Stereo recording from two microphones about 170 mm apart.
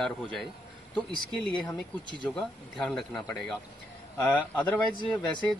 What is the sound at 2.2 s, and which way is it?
A man's voice, 5° left (ahead or behind).